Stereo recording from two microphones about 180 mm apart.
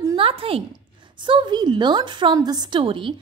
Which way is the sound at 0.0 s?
25° right (ahead or behind).